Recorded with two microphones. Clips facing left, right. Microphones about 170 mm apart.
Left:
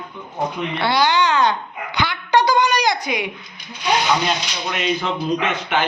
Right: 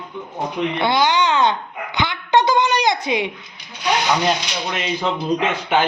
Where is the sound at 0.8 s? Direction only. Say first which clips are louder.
Left 1 dB; 20° right (ahead or behind).